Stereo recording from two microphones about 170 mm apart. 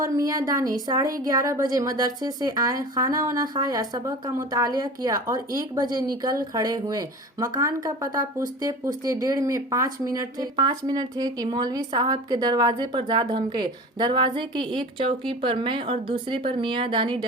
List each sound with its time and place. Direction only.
0.0 s speech: 20° right (ahead or behind)